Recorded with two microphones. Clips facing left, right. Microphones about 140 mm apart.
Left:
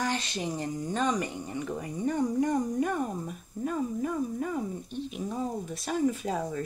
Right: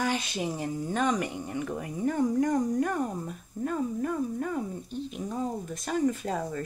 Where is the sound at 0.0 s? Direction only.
10° right (ahead or behind).